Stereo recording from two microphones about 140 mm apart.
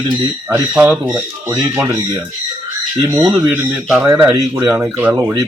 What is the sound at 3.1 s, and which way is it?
Speech, 15° right (ahead or behind).